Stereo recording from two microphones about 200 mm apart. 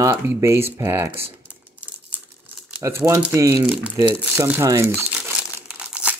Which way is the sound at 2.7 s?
10° right (ahead or behind).